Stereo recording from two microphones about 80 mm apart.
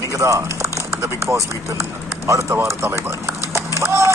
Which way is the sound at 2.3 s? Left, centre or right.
Right.